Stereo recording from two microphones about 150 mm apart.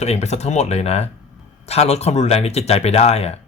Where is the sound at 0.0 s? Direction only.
45° left (ahead or behind).